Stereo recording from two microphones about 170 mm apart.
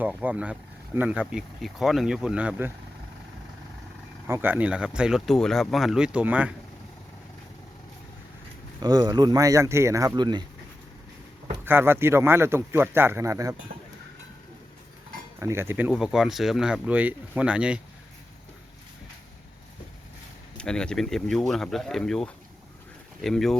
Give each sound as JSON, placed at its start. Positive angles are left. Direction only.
{"t": 0.0, "sound": "speech", "side_deg": -10}
{"t": 4.3, "sound": "speech", "side_deg": -10}
{"t": 8.8, "sound": "speech", "side_deg": -25}
{"t": 11.6, "sound": "speech", "side_deg": -15}
{"t": 15.4, "sound": "speech", "side_deg": -15}
{"t": 20.6, "sound": "speech", "side_deg": 5}